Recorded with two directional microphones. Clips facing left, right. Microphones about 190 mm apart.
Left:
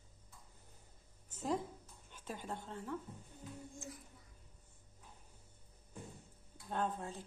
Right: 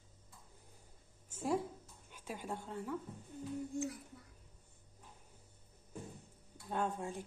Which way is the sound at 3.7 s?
65° right (ahead or behind).